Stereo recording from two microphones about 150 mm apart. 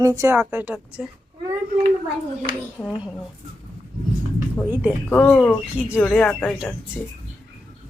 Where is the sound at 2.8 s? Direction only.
15° left (ahead or behind).